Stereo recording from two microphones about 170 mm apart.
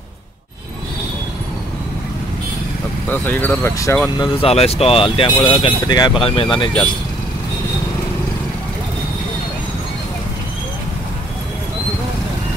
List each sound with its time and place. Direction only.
3.1 s speech: 10° left (ahead or behind)
4.2 s speech: 35° left (ahead or behind)